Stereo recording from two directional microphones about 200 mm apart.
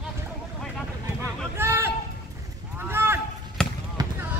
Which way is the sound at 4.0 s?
15° right (ahead or behind).